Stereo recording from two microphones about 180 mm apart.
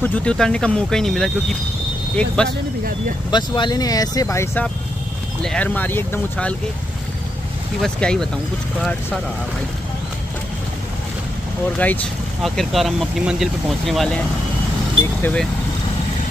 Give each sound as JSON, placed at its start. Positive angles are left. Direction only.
{"t": 0.0, "sound": "speech", "side_deg": 5}
{"t": 3.3, "sound": "speech", "side_deg": 25}
{"t": 7.8, "sound": "speech", "side_deg": 5}
{"t": 11.8, "sound": "speech", "side_deg": 10}